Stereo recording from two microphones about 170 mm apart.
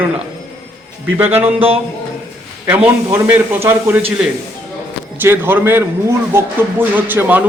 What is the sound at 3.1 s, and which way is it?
A man's voice, 10° right (ahead or behind).